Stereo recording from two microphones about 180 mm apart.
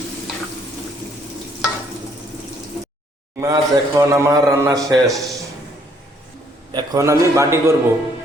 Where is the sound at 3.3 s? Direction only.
15° right (ahead or behind).